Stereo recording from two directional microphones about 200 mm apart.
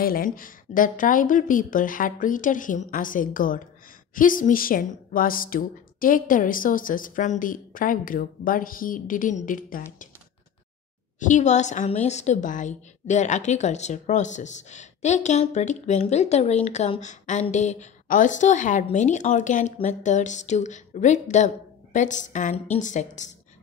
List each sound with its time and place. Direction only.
0.0 s a woman's voice: 45° left (ahead or behind)
11.1 s a woman's voice: 40° left (ahead or behind)